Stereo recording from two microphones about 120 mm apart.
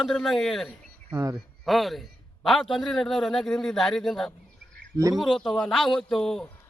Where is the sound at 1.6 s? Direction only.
Centre (ahead or behind).